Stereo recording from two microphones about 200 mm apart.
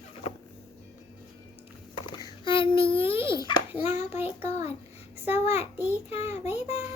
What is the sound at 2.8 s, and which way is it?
Speech, 30° left (ahead or behind).